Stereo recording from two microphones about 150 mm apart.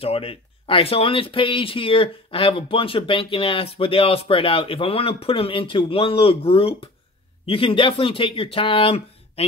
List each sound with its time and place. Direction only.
0.0 s speech: 40° left (ahead or behind)